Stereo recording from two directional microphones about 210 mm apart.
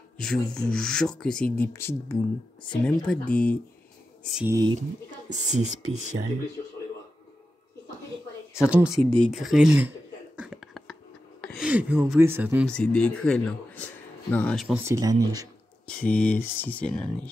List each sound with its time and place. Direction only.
0.2 s speech: 5° left (ahead or behind)
4.5 s speech: 15° right (ahead or behind)
5.3 s speech: 35° right (ahead or behind)
8.6 s speech: 5° right (ahead or behind)
9.2 s a sound: centre (ahead or behind)
11.4 s speech: centre (ahead or behind)
12.6 s speech: 5° left (ahead or behind)
14.8 s speech: 15° right (ahead or behind)
16.0 s speech: 5° left (ahead or behind)